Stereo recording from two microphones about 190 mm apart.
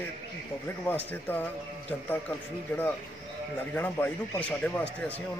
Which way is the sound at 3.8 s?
10° left (ahead or behind).